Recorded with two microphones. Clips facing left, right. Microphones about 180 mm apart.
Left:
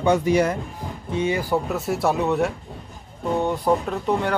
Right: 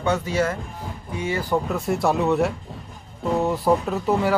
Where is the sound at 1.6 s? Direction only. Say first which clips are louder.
Even; centre (ahead or behind).